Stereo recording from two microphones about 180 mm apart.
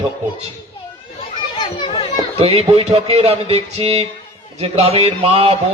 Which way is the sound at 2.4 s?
35° right (ahead or behind).